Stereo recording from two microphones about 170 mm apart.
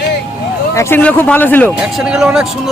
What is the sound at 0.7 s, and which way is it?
A man's voice, 15° left (ahead or behind).